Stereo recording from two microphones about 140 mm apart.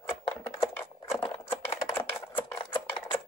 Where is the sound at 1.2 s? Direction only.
45° left (ahead or behind).